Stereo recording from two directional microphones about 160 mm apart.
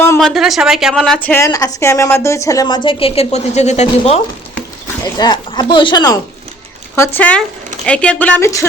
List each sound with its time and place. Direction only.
0.2 s a woman's voice: centre (ahead or behind); by 4.2 s 45° left (ahead or behind)
5.1 s speech: 25° left (ahead or behind)
6.9 s a woman's voice: 15° left (ahead or behind)